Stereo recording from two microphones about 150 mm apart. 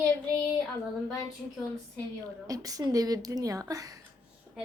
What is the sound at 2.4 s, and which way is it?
A woman's voice, 25° right (ahead or behind).